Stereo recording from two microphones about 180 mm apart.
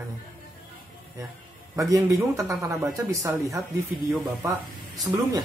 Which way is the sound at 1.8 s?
15° right (ahead or behind).